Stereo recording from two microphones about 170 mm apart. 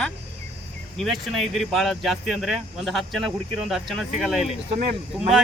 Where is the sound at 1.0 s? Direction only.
Centre (ahead or behind).